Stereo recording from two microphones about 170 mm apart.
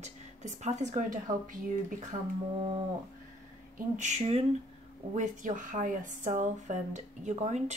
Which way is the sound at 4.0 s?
40° right (ahead or behind).